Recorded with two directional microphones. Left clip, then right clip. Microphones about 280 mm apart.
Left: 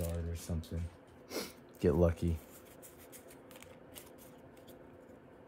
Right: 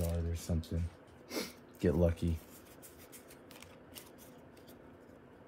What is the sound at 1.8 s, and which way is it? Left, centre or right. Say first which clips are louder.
Speech: left 2 dB; left.